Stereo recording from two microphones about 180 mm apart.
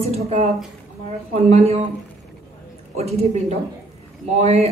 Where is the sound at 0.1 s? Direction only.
40° right (ahead or behind).